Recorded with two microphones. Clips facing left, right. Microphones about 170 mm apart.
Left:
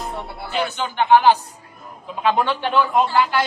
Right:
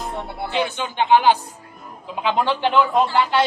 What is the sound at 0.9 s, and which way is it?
Speech, 15° right (ahead or behind).